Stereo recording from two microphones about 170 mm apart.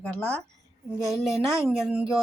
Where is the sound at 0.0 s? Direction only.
10° left (ahead or behind).